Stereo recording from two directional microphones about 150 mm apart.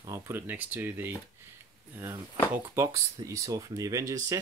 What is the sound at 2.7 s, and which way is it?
Speech, 20° right (ahead or behind).